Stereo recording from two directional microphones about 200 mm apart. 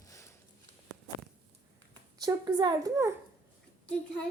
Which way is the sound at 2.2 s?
20° right (ahead or behind).